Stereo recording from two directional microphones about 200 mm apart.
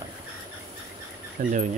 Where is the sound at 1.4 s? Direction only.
40° right (ahead or behind).